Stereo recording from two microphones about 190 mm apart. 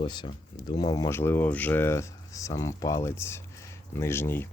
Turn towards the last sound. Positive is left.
turn(degrees=10)  # may be behind; listen again after turning